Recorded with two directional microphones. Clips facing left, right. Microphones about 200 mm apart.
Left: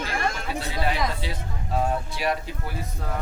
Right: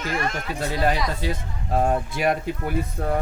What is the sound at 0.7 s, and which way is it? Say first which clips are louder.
Speech: right 4 dB; 45° right (ahead or behind).